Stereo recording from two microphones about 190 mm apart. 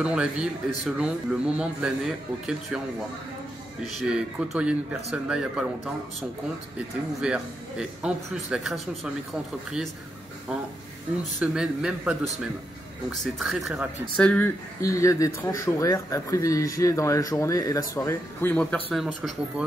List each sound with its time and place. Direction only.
0.0 s a man's voice: 5° right (ahead or behind)
4.0 s a man's voice: 5° right (ahead or behind)
7.2 s a man's voice: 5° right (ahead or behind)
11.3 s a man's voice: 5° right (ahead or behind)
13.2 s a man's voice: centre (ahead or behind)